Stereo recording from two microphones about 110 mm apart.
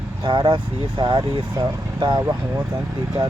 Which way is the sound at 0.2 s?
45° right (ahead or behind).